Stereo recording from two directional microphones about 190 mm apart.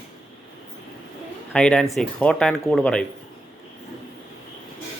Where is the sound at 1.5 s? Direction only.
5° left (ahead or behind).